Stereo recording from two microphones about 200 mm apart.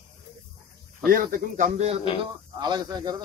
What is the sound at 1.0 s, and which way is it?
Speech, 45° right (ahead or behind).